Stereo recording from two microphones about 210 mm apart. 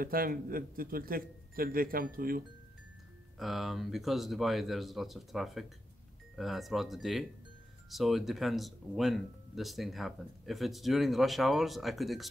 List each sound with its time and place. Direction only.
0.0 s a man's voice: 45° right (ahead or behind)
3.3 s speech: centre (ahead or behind)